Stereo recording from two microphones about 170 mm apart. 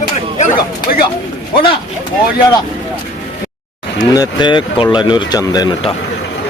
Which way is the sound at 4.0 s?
25° left (ahead or behind).